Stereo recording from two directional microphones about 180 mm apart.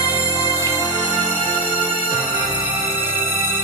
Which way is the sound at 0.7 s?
20° right (ahead or behind).